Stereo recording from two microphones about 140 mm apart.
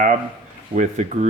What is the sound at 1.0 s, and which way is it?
Speech, 60° right (ahead or behind).